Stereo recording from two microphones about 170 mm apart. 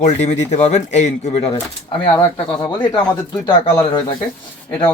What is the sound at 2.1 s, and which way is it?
Speech, 20° left (ahead or behind).